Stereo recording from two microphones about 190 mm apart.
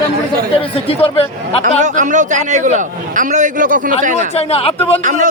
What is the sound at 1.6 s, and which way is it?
A man's voice, 40° right (ahead or behind).